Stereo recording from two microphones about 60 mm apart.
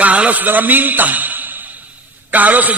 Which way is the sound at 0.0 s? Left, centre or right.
Right.